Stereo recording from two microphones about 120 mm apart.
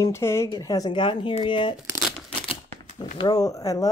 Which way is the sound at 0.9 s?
45° left (ahead or behind).